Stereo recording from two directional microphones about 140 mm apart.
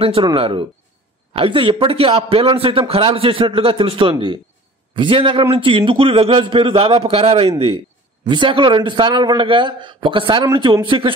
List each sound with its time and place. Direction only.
0.0 s a man's voice: 40° right (ahead or behind)